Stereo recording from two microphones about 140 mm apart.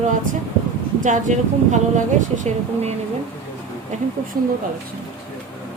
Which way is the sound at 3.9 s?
60° right (ahead or behind).